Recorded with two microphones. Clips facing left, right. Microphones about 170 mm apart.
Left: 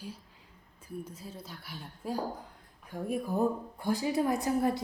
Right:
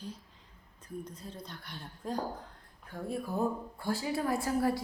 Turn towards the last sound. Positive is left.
turn(degrees=20)  # may be behind; listen again after turning